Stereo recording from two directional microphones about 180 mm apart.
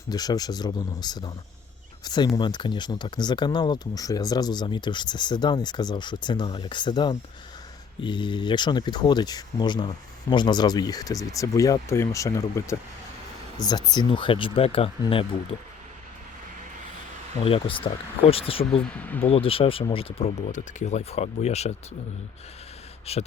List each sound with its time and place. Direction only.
0.1 s speech: 20° left (ahead or behind)
17.4 s speech: 30° left (ahead or behind)
18.9 s speech: 10° left (ahead or behind)
19.3 s speech: 30° left (ahead or behind)
23.1 s speech: 35° left (ahead or behind)